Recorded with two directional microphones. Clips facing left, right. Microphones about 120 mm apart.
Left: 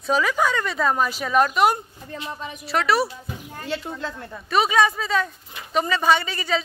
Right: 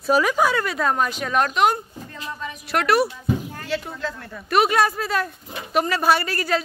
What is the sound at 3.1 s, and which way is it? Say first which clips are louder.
Speech: right 10 dB; 25° left (ahead or behind).